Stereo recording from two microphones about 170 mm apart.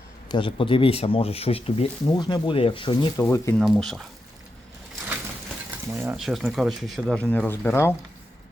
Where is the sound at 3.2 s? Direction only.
15° left (ahead or behind).